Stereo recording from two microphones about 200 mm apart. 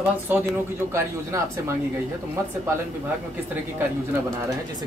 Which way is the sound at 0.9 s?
15° right (ahead or behind).